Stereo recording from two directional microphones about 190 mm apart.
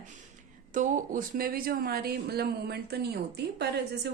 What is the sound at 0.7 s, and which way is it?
Speech, 45° right (ahead or behind).